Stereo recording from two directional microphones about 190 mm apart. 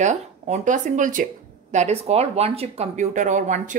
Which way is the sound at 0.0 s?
40° right (ahead or behind).